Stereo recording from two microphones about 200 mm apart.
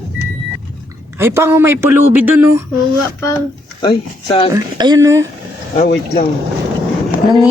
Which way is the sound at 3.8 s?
25° left (ahead or behind).